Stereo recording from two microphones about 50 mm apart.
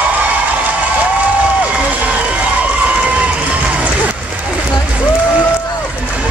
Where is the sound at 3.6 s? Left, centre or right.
Right.